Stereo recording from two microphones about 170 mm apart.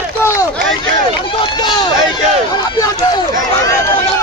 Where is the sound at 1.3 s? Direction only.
25° left (ahead or behind).